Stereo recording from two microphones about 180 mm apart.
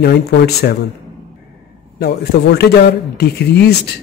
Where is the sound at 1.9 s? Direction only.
65° left (ahead or behind).